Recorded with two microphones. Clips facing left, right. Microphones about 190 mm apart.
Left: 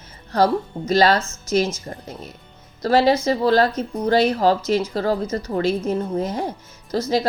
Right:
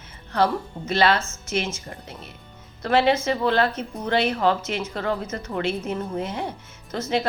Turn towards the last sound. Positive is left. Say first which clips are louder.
# left 4 dB
turn(degrees=35)  # may be behind; listen again after turning